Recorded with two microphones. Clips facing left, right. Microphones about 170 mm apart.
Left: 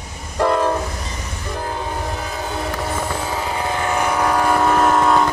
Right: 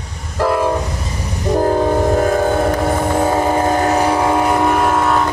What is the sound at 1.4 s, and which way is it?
Train, 40° right (ahead or behind).